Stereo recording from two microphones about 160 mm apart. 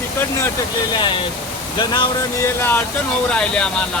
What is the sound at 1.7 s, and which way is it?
Speech, 25° left (ahead or behind).